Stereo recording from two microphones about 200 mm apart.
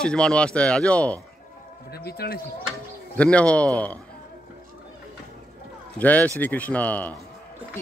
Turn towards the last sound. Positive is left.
turn(degrees=10)  # may be behind; listen again after turning